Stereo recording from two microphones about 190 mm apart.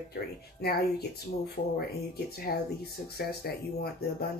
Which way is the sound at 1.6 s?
50° left (ahead or behind).